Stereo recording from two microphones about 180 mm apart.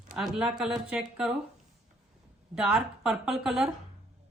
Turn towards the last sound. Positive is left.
turn(degrees=-5)  # may be behind; listen again after turning